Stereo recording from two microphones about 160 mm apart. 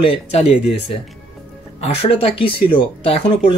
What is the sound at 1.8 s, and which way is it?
Speech, 40° left (ahead or behind).